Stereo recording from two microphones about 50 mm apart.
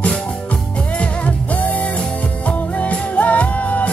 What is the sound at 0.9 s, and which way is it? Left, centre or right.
Music, left.